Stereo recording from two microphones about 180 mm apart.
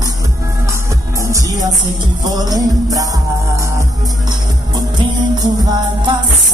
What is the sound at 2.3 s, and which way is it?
Music, 20° right (ahead or behind).